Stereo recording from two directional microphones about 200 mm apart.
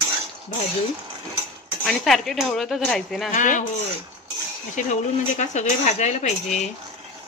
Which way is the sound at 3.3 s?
40° left (ahead or behind).